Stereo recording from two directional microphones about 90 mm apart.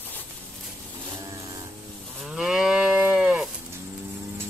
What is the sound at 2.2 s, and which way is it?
Moo, 5° right (ahead or behind).